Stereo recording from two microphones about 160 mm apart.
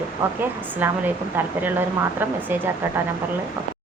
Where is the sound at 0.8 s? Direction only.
10° right (ahead or behind).